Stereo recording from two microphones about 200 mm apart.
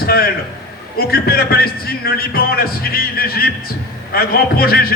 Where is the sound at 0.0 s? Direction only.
50° left (ahead or behind).